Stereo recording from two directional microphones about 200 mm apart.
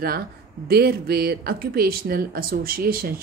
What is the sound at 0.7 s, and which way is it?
Speech, 50° right (ahead or behind).